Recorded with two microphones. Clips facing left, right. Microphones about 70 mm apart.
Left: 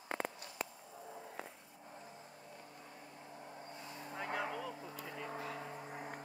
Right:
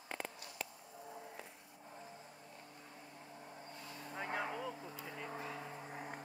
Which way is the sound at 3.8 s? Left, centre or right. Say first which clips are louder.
Left 1 dB; left.